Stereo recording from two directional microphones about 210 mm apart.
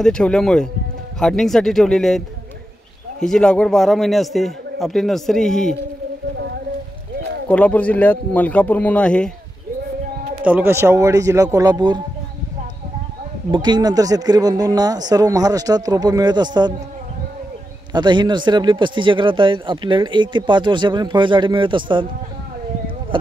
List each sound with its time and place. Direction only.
0.0 s a man's voice: 5° left (ahead or behind)
7.4 s a man's voice: 5° left (ahead or behind)
10.4 s speech: 10° right (ahead or behind)
13.5 s speech: 20° right (ahead or behind)
17.9 s speech: 20° right (ahead or behind)